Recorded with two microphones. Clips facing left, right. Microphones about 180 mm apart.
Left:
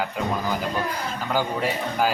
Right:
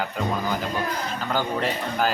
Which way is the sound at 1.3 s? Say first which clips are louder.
Left 1 dB; 10° left (ahead or behind).